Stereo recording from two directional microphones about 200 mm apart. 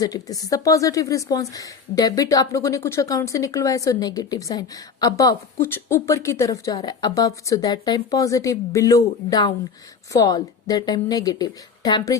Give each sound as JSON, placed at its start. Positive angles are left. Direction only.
{"t": 0.0, "sound": "a woman's voice", "side_deg": 20}